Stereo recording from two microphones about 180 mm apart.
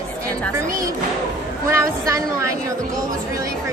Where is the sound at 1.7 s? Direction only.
15° right (ahead or behind).